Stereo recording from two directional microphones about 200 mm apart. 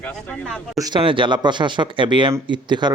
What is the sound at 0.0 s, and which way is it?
Speech, 5° left (ahead or behind).